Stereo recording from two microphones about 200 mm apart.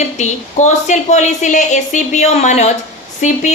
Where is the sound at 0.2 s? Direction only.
35° left (ahead or behind).